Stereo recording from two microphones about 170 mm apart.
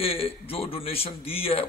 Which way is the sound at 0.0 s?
35° left (ahead or behind).